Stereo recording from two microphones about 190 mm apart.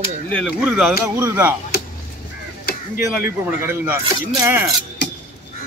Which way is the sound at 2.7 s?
55° left (ahead or behind).